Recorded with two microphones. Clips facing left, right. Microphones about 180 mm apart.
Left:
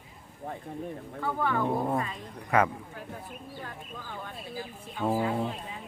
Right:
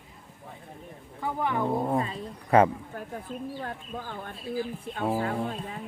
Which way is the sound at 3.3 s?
30° right (ahead or behind).